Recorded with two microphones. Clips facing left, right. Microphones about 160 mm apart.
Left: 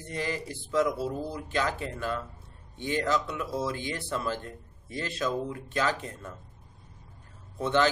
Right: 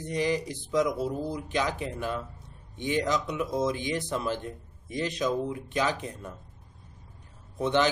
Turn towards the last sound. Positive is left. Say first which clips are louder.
# right 1 dB
turn(degrees=-15)  # may be behind; listen again after turning